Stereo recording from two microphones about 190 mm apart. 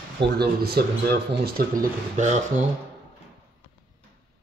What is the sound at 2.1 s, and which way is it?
Speech, 40° right (ahead or behind).